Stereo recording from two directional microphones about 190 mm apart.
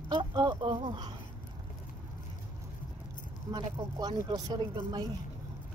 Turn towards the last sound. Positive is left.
turn(degrees=-25)  # may be behind; listen again after turning